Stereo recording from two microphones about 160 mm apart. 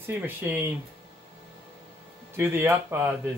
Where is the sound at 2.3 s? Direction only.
15° right (ahead or behind).